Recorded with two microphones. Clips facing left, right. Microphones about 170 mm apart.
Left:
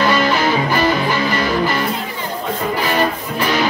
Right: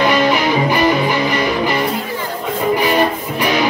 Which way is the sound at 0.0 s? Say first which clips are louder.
Right 2 dB; 15° right (ahead or behind).